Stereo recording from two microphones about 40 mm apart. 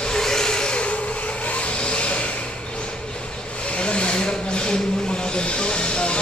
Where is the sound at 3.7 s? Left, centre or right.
Left.